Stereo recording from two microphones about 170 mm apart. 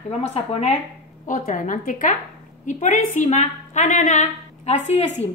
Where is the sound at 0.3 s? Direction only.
40° left (ahead or behind).